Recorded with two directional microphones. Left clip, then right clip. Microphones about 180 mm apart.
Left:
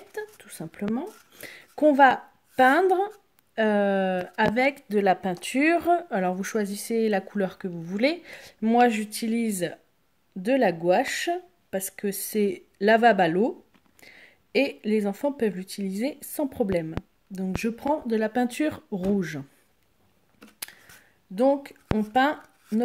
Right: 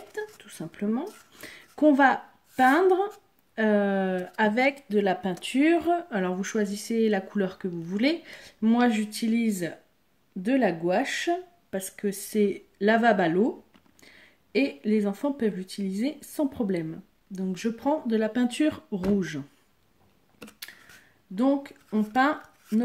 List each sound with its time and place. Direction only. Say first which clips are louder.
0.1 s a sound: even; 50° left (ahead or behind)
3.5 s speech: left 2 dB; 50° left (ahead or behind)
21.4 s speech: left 4 dB; 50° left (ahead or behind)